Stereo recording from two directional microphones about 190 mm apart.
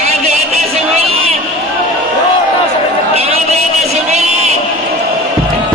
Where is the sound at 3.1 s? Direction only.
35° right (ahead or behind).